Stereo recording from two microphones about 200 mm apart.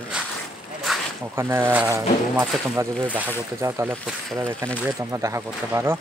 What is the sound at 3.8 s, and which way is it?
Speech, centre (ahead or behind).